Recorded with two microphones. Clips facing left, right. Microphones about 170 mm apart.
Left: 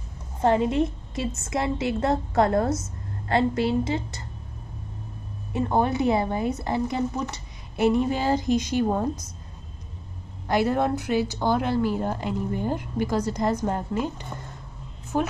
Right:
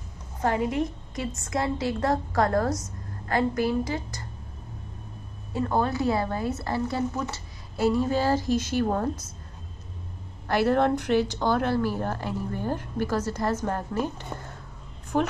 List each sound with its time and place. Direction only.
0.4 s a woman's voice: 25° left (ahead or behind)
5.5 s a woman's voice: 20° left (ahead or behind)
10.5 s a woman's voice: 10° left (ahead or behind)